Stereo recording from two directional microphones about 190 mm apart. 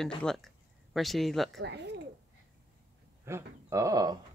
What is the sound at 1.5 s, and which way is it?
Speech, 65° right (ahead or behind).